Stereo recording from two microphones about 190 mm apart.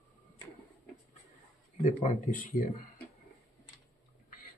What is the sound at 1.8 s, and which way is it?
Speech, 40° left (ahead or behind).